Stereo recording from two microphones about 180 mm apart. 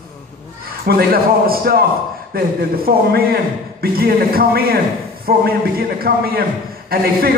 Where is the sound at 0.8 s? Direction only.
55° right (ahead or behind).